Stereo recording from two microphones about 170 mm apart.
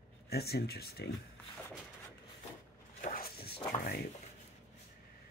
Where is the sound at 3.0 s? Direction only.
60° left (ahead or behind).